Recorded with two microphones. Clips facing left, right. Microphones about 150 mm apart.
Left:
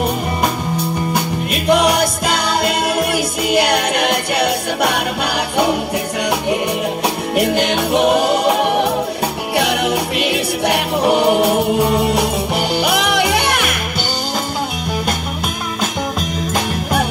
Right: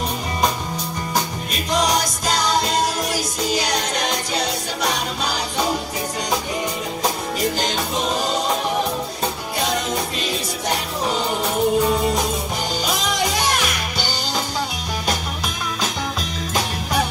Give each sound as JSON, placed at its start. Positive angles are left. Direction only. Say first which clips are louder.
{"t": 1.1, "sound": "music", "louder": "left 5 dB", "side_deg": 60}
{"t": 7.3, "sound": "music", "louder": "left 7 dB", "side_deg": 65}